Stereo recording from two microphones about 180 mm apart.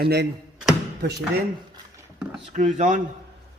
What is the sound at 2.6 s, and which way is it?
Speech, 40° right (ahead or behind).